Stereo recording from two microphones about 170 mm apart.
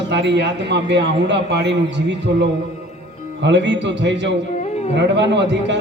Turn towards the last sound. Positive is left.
turn(degrees=-90)